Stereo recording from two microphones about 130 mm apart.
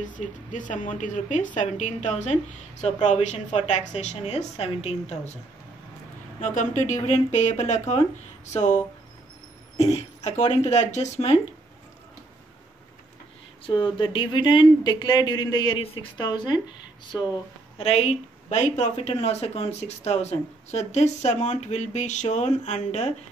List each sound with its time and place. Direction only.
0.0 s a woman's voice: 75° left (ahead or behind); by 5.4 s 60° left (ahead or behind)
6.4 s a woman's voice: 70° left (ahead or behind); by 11.3 s 55° left (ahead or behind)
13.7 s speech: 40° left (ahead or behind)
15.8 s speech: 45° left (ahead or behind)
17.7 s speech: 55° left (ahead or behind)